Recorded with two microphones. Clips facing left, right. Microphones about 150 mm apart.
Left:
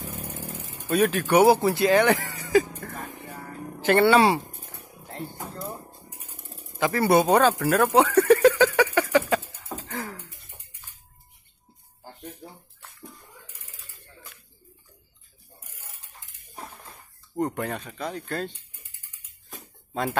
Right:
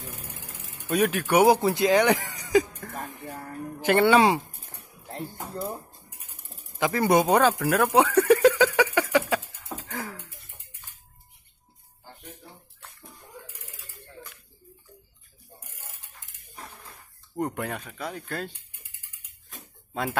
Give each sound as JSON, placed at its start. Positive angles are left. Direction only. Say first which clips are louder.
{"t": 0.8, "sound": "speech", "louder": "left 2 dB", "side_deg": -10}
{"t": 5.4, "sound": "speech", "louder": "right 6 dB", "side_deg": -10}
{"t": 6.8, "sound": "a sound", "louder": "left 1 dB", "side_deg": -15}
{"t": 10.0, "sound": "cough", "louder": "left 1 dB", "side_deg": 15}
{"t": 12.0, "sound": "music", "louder": "left 5 dB", "side_deg": 40}
{"t": 17.4, "sound": "speech", "louder": "left 2 dB", "side_deg": -10}
{"t": 19.5, "sound": "a sound", "louder": "left 2 dB", "side_deg": 0}